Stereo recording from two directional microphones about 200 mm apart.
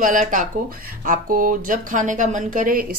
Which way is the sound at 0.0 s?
40° right (ahead or behind).